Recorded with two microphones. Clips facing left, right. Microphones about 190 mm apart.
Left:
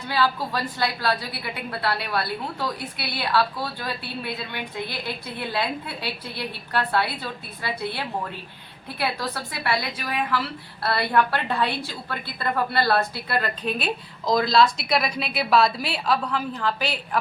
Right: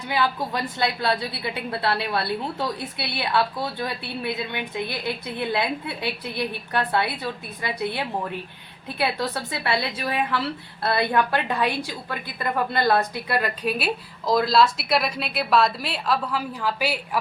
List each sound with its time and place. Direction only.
0.1 s a woman's voice: 20° right (ahead or behind)